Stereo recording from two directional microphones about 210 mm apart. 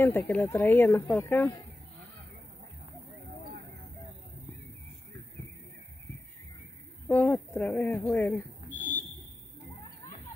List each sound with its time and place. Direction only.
0.0 s speech: 10° left (ahead or behind)
7.1 s speech: 10° left (ahead or behind)
8.7 s a sound: 10° left (ahead or behind)